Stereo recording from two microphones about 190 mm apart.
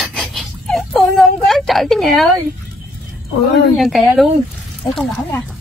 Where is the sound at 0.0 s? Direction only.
5° left (ahead or behind).